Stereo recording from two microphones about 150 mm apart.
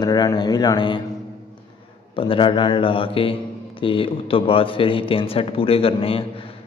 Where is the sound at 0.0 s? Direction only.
25° left (ahead or behind).